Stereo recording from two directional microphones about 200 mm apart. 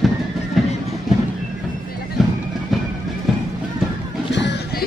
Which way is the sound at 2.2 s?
Centre (ahead or behind).